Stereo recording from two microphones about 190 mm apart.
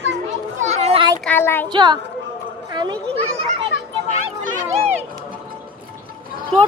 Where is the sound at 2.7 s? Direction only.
25° right (ahead or behind).